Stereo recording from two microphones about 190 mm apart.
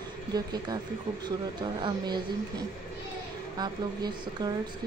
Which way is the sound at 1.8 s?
20° right (ahead or behind).